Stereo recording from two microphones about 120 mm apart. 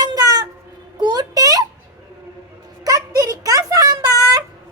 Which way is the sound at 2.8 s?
30° right (ahead or behind).